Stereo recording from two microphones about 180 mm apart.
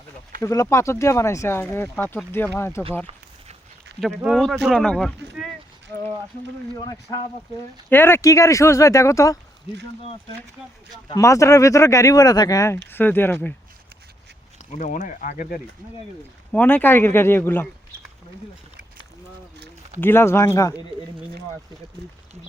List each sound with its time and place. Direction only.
0.4 s speech: 15° left (ahead or behind)
4.2 s speech: centre (ahead or behind)
6.7 s speech: 20° left (ahead or behind)
11.1 s speech: 15° left (ahead or behind)
14.7 s speech: 45° left (ahead or behind)
16.5 s speech: 10° left (ahead or behind)
20.0 s speech: 15° left (ahead or behind)